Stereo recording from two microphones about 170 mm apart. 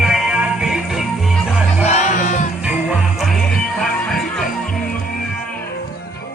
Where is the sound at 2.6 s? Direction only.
5° right (ahead or behind).